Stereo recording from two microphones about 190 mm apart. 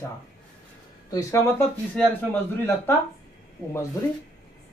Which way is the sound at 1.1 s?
15° left (ahead or behind).